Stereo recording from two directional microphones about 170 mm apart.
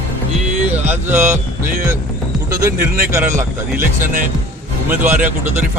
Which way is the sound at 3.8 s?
55° right (ahead or behind).